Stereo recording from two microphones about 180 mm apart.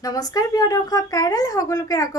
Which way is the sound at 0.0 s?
20° left (ahead or behind).